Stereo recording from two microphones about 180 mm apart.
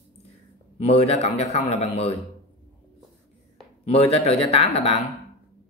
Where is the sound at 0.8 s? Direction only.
35° left (ahead or behind).